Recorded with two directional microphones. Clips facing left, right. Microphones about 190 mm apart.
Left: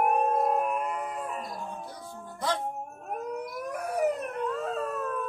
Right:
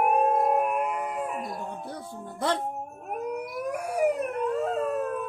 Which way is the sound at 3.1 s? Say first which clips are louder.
Right 2 dB; 10° right (ahead or behind).